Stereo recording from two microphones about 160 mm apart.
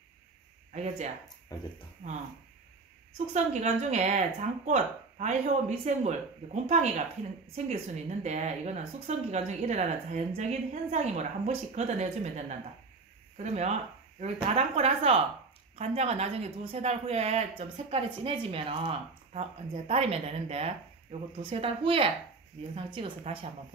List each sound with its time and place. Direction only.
0.7 s a woman's voice: 45° right (ahead or behind)
1.5 s speech: 25° left (ahead or behind)
2.0 s a woman's voice: 40° right (ahead or behind)
3.3 s a woman's voice: 45° right (ahead or behind)